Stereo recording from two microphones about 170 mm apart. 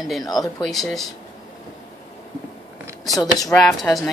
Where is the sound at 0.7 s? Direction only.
Centre (ahead or behind).